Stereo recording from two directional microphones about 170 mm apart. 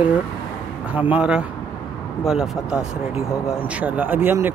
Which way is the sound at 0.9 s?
10° right (ahead or behind).